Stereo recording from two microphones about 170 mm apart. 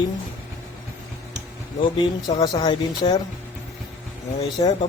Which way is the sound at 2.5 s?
25° left (ahead or behind).